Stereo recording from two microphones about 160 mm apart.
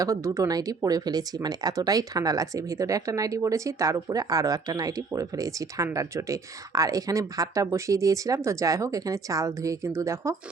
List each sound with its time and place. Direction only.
0.0 s speech: 20° right (ahead or behind)